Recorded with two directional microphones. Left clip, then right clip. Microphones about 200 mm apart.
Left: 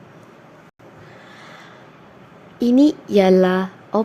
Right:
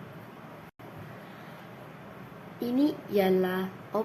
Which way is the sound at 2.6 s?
45° left (ahead or behind).